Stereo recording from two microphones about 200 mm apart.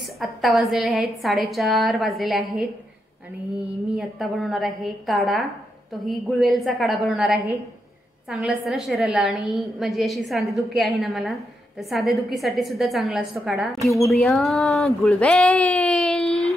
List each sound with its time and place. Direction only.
0.2 s a woman's voice: centre (ahead or behind)
3.9 s a woman's voice: centre (ahead or behind)